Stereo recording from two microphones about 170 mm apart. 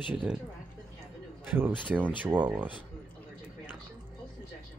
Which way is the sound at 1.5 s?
10° right (ahead or behind).